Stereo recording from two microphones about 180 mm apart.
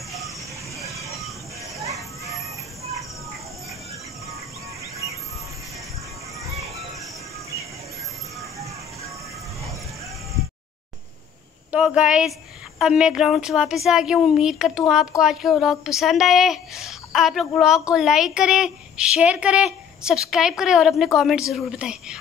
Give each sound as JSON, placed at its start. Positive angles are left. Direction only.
{"t": 0.8, "sound": "vehicle", "side_deg": -15}
{"t": 11.7, "sound": "a woman's voice", "side_deg": -5}